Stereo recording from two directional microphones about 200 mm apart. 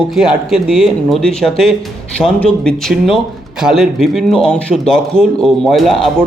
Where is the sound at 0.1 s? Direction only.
Centre (ahead or behind).